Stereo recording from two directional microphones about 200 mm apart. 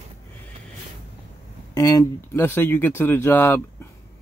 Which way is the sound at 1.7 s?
15° left (ahead or behind).